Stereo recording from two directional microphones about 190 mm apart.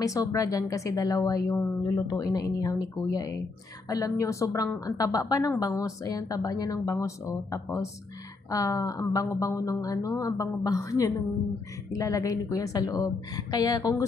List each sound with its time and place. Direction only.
0.0 s a woman's voice: 20° left (ahead or behind)